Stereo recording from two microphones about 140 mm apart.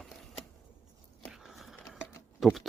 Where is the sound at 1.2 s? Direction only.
Centre (ahead or behind).